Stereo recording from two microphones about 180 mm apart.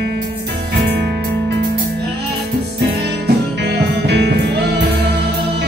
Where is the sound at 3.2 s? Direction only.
65° right (ahead or behind).